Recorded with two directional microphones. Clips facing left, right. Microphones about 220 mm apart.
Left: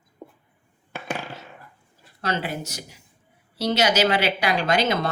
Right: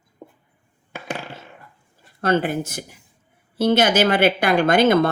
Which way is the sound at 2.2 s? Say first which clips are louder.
Right 8 dB; 50° right (ahead or behind).